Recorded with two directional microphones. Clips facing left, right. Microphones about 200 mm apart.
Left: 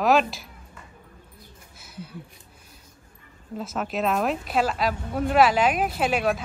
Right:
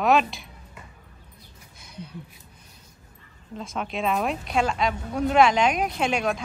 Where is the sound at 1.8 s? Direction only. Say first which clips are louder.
Even; 5° left (ahead or behind).